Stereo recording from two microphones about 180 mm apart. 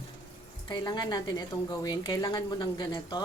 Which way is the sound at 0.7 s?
25° left (ahead or behind).